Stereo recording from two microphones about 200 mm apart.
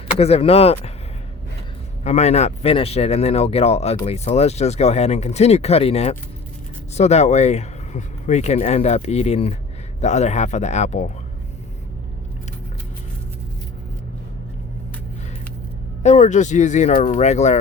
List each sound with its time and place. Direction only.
0.2 s speech: 30° left (ahead or behind)
2.0 s speech: 35° left (ahead or behind)
16.0 s speech: 35° left (ahead or behind)